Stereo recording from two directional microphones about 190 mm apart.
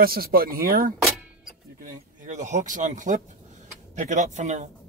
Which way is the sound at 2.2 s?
40° right (ahead or behind).